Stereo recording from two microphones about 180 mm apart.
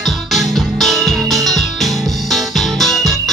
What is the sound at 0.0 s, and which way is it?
Music, centre (ahead or behind).